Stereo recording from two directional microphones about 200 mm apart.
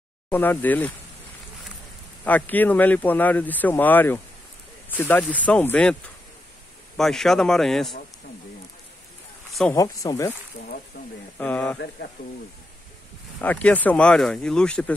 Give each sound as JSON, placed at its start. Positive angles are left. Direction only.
{"t": 0.3, "sound": "speech", "side_deg": 10}
{"t": 2.2, "sound": "speech", "side_deg": 10}
{"t": 7.0, "sound": "speech", "side_deg": 0}
{"t": 9.5, "sound": "a sound", "side_deg": 0}
{"t": 9.8, "sound": "speech", "side_deg": 15}
{"t": 11.3, "sound": "speech", "side_deg": 10}
{"t": 13.4, "sound": "speech", "side_deg": 5}